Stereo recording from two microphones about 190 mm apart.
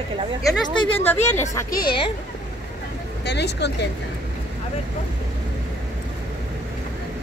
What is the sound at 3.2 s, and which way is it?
Speech, 60° left (ahead or behind).